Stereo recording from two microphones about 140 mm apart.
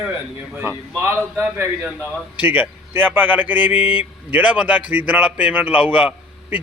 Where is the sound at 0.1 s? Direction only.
15° right (ahead or behind).